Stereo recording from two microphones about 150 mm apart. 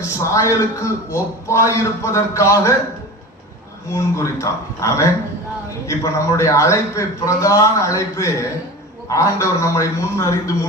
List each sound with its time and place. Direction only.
0.2 s a man's voice: 20° left (ahead or behind)
3.9 s a man's voice: 20° left (ahead or behind)